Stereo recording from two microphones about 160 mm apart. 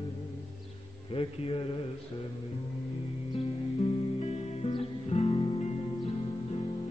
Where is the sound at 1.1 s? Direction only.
35° left (ahead or behind).